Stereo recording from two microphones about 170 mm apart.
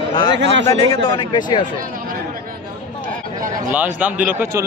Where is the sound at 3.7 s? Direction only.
10° right (ahead or behind).